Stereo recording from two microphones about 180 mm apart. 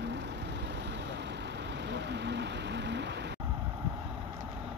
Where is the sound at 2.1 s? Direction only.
70° right (ahead or behind).